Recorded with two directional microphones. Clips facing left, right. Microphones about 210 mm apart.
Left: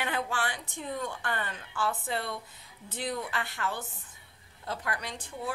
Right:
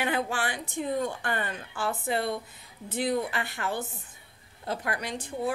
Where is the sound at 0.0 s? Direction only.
10° right (ahead or behind).